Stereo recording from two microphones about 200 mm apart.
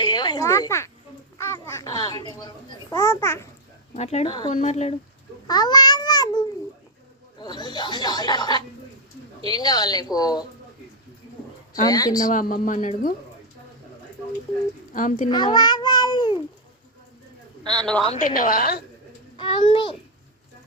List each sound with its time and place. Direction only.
0.0 s a woman's voice: 20° left (ahead or behind)
3.9 s speech: 35° left (ahead or behind)
5.5 s a child's voice: 20° left (ahead or behind)
11.7 s speech: 20° left (ahead or behind)
12.3 s speech: 40° left (ahead or behind)
14.9 s speech: 40° left (ahead or behind)
15.5 s babbling: 20° left (ahead or behind)
17.6 s speech: 20° right (ahead or behind)
18.2 s a woman's voice: 45° left (ahead or behind)
19.4 s speech: 25° left (ahead or behind)